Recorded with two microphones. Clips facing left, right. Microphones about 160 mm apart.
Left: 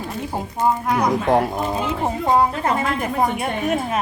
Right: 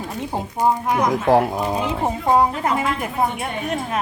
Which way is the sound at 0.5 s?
15° right (ahead or behind).